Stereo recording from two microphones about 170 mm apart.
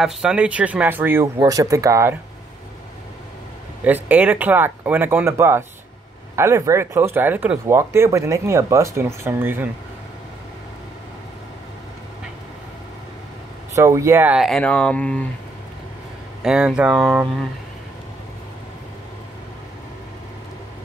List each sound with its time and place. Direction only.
0.0 s speech: 5° right (ahead or behind)
3.8 s speech: 10° right (ahead or behind)
13.7 s speech: 15° right (ahead or behind); by 15.2 s 10° left (ahead or behind)
16.4 s speech: 5° right (ahead or behind)
17.0 s speech: 15° right (ahead or behind)